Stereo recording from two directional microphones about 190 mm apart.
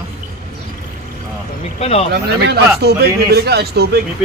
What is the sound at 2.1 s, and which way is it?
Speech, 55° right (ahead or behind).